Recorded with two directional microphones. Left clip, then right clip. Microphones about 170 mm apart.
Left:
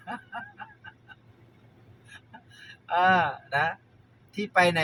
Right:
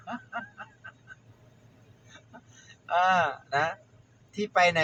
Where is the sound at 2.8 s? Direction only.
15° left (ahead or behind).